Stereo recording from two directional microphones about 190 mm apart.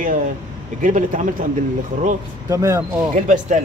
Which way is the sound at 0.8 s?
45° right (ahead or behind).